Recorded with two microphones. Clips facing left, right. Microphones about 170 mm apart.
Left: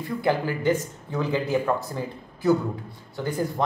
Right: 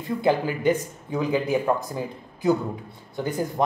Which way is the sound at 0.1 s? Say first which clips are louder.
Right 2 dB; 20° right (ahead or behind).